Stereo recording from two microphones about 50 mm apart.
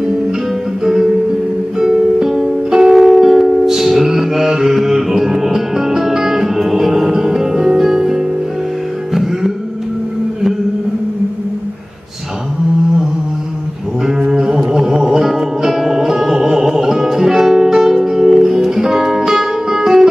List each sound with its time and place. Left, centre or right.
1.8 s music: centre
14.0 s music: centre